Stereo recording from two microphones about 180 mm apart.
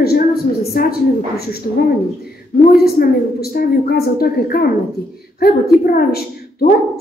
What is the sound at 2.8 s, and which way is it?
A woman's voice, 60° left (ahead or behind).